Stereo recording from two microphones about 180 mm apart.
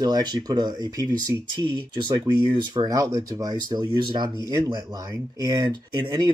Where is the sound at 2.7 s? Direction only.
20° right (ahead or behind).